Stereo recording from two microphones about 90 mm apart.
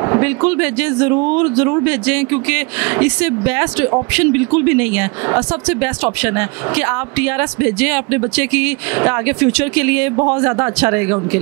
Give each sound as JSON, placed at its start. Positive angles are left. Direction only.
{"t": 0.1, "sound": "speech", "side_deg": -15}